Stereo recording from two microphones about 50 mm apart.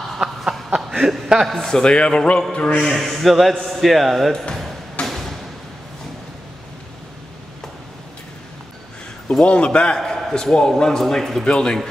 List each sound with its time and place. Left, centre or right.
0.7 s chuckle: centre
1.5 s speech: centre
2.0 s a man's voice: left
2.8 s a man's voice: centre
5.0 s a sound: centre
9.4 s a man's voice: left
9.9 s a sound: centre
10.3 s speech: centre